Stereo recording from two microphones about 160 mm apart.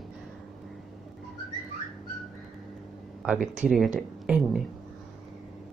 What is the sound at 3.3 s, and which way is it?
Speech, 45° right (ahead or behind).